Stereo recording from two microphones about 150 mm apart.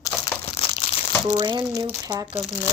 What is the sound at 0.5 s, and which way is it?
Crumpling, 40° left (ahead or behind).